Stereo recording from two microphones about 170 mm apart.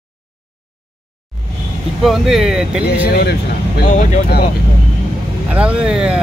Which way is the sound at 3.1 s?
65° left (ahead or behind).